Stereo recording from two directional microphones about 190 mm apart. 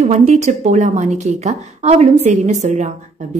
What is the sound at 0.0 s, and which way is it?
A woman's voice, 35° right (ahead or behind).